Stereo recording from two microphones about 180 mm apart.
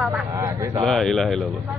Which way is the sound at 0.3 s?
15° right (ahead or behind).